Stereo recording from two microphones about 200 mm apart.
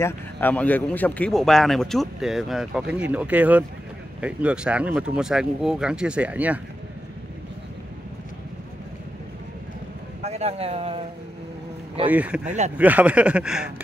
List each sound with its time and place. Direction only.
0.0 s a man's voice: 10° left (ahead or behind); by 6.6 s 5° right (ahead or behind)
10.2 s a man's voice: 30° right (ahead or behind)
12.1 s speech: 5° right (ahead or behind)
12.4 s speech: 35° right (ahead or behind)
12.7 s speech: 5° right (ahead or behind)